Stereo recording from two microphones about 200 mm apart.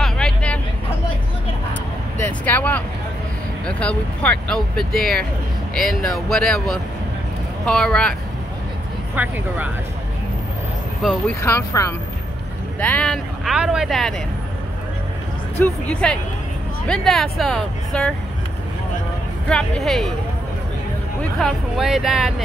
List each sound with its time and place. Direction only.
0.0 s vehicle: 5° left (ahead or behind)
2.1 s vehicle: 10° left (ahead or behind)
3.6 s speech: 5° left (ahead or behind)
9.1 s speech: 10° right (ahead or behind)
11.0 s speech: centre (ahead or behind)
11.4 s speech: 15° left (ahead or behind)
12.8 s speech: 5° left (ahead or behind)
15.6 s speech: 5° left (ahead or behind)
19.5 s speech: 5° left (ahead or behind)
21.2 s speech: 5° left (ahead or behind)